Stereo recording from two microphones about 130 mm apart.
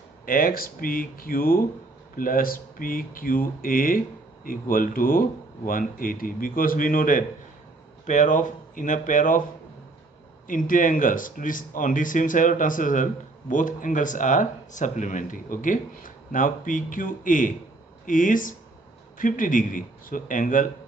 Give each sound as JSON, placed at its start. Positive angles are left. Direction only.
{"t": 0.2, "sound": "speech", "side_deg": 90}
{"t": 8.1, "sound": "speech", "side_deg": 75}
{"t": 10.5, "sound": "speech", "side_deg": 90}